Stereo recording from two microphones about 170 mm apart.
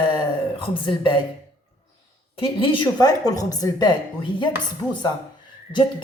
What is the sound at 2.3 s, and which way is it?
Speech, 30° left (ahead or behind).